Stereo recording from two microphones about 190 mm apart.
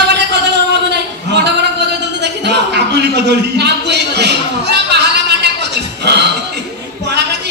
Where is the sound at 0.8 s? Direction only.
65° right (ahead or behind).